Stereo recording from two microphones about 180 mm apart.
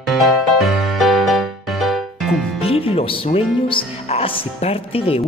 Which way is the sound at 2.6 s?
30° left (ahead or behind).